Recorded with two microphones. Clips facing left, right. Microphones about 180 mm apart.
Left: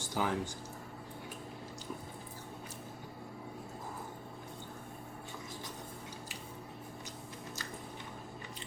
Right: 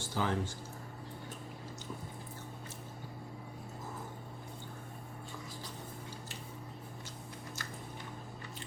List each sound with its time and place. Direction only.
0.0 s speech: 15° left (ahead or behind)